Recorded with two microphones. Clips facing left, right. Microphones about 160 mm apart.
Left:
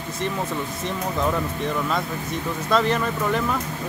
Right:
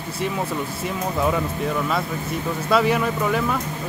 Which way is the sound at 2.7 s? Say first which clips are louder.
Right 2 dB; 10° right (ahead or behind).